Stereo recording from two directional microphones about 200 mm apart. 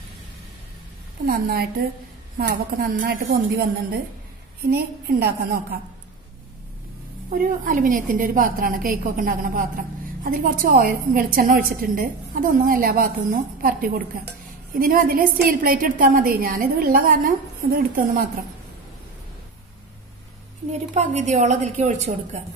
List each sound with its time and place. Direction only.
1.2 s a woman's voice: 50° right (ahead or behind)
7.2 s a woman's voice: 45° right (ahead or behind)
20.9 s a woman's voice: 35° right (ahead or behind)